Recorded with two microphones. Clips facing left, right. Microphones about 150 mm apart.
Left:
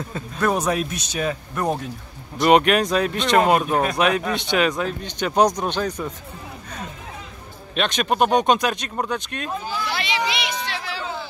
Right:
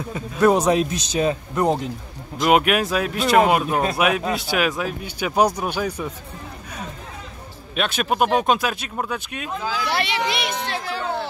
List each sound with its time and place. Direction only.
0.1 s speech: 15° right (ahead or behind)
2.4 s speech: 5° right (ahead or behind)
7.7 s speech: 5° right (ahead or behind)
9.6 s a sound: 90° right; by 11.2 s 55° right (ahead or behind)